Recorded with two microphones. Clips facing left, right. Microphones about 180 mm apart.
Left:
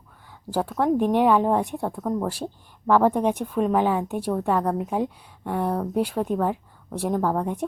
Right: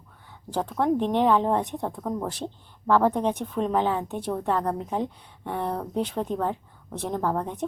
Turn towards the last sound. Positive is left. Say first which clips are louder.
# left 3 dB
turn(degrees=10)  # may be behind; listen again after turning